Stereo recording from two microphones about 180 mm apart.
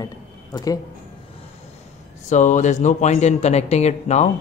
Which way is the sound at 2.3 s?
40° left (ahead or behind).